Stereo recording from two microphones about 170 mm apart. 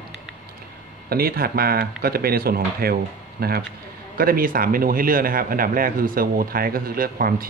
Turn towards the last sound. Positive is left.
turn(degrees=-60)  # may be behind; listen again after turning